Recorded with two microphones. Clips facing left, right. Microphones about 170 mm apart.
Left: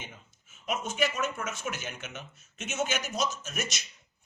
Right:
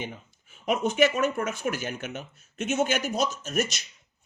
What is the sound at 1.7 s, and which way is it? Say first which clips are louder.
A man's voice: right 7 dB; 50° right (ahead or behind).